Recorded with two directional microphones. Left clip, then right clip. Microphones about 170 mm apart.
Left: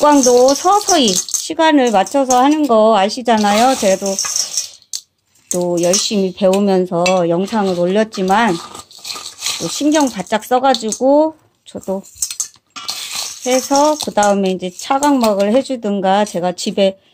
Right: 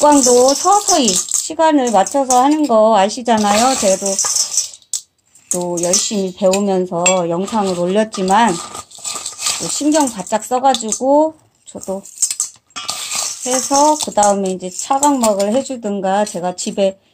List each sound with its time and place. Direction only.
0.0 s speech: 40° left (ahead or behind)
2.7 s speech: 30° left (ahead or behind)
3.6 s speech: 35° left (ahead or behind)
5.6 s speech: 50° left (ahead or behind)
7.8 s speech: 20° left (ahead or behind)
9.1 s a sound: 5° left (ahead or behind)
9.8 s speech: 40° left (ahead or behind)
12.8 s a sound: centre (ahead or behind)
13.4 s speech: 40° left (ahead or behind)